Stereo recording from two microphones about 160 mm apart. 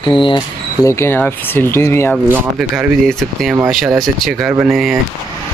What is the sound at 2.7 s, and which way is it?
Speech, 5° right (ahead or behind).